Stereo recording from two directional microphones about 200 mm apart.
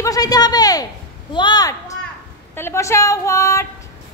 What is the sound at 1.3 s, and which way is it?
A woman's voice, 20° left (ahead or behind).